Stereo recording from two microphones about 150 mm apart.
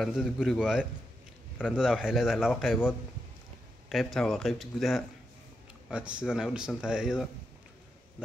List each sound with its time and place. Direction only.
0.0 s speech: centre (ahead or behind)
3.9 s speech: centre (ahead or behind)